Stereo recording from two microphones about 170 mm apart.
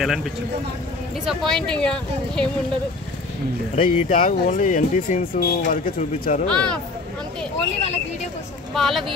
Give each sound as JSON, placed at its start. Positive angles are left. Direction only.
{"t": 0.0, "sound": "speech", "side_deg": 0}
{"t": 3.7, "sound": "speech", "side_deg": 40}
{"t": 4.1, "sound": "speech", "side_deg": 50}
{"t": 6.4, "sound": "speech", "side_deg": 5}
{"t": 7.8, "sound": "speech", "side_deg": 40}
{"t": 8.7, "sound": "speech", "side_deg": 0}